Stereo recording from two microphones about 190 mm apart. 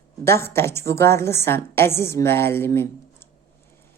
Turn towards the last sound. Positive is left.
turn(degrees=10)  # may be behind; listen again after turning